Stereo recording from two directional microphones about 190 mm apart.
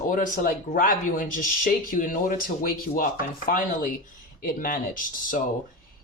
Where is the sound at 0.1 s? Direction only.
45° left (ahead or behind).